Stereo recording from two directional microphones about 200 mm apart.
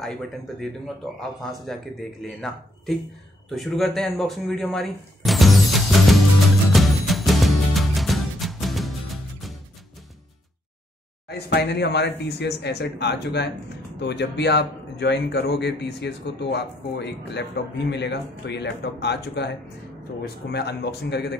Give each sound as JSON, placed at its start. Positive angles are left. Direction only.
{"t": 0.0, "sound": "speech", "side_deg": 0}
{"t": 2.2, "sound": "speech", "side_deg": 0}
{"t": 6.7, "sound": "music", "side_deg": 0}
{"t": 11.2, "sound": "a man's voice", "side_deg": 55}